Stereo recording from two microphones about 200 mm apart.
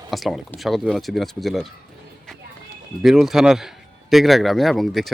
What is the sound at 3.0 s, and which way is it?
Speech, centre (ahead or behind).